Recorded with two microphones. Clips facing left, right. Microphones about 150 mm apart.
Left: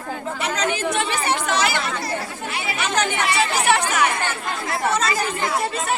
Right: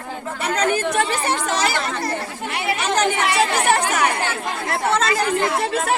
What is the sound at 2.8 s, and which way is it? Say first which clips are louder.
Speech: right 2 dB; 35° right (ahead or behind).